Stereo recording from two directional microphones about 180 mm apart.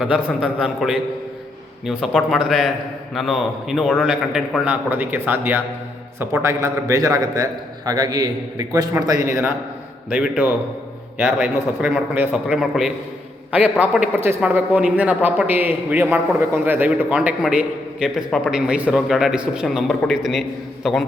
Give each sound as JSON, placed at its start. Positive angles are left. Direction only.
{"t": 0.0, "sound": "a man's voice", "side_deg": -5}